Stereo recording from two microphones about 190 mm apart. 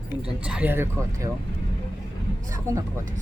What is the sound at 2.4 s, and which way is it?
Vehicle, 15° right (ahead or behind).